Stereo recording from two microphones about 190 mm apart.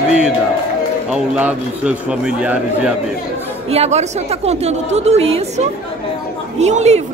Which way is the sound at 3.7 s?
35° right (ahead or behind).